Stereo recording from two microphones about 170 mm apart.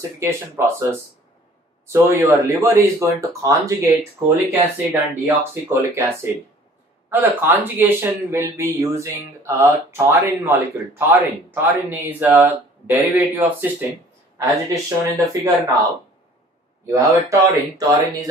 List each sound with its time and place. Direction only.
0.2 s a man's voice: 15° right (ahead or behind)
1.9 s a man's voice: 15° right (ahead or behind)
16.8 s speech: 15° right (ahead or behind)